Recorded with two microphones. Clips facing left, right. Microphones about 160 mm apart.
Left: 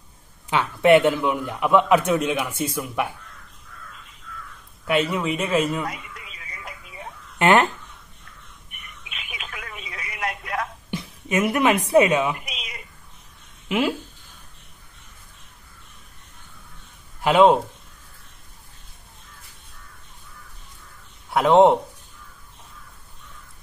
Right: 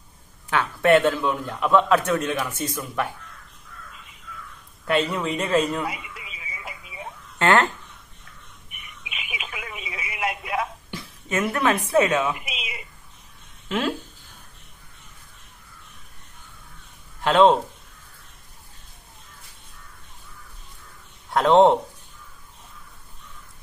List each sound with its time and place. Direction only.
0.5 s a man's voice: 15° left (ahead or behind)
4.8 s a sound: 5° left (ahead or behind)
7.3 s a sound: 15° left (ahead or behind)
8.6 s telephone: 5° right (ahead or behind)
10.9 s a woman's voice: 15° left (ahead or behind)
12.4 s cat: 5° right (ahead or behind)
13.7 s speech: 10° left (ahead or behind)
17.2 s speech: 10° left (ahead or behind)
21.3 s speech: 5° left (ahead or behind)